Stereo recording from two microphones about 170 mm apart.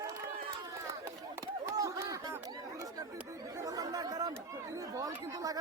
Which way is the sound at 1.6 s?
20° right (ahead or behind).